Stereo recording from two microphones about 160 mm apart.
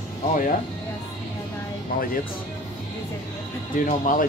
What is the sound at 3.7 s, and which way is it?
Speech, 55° left (ahead or behind).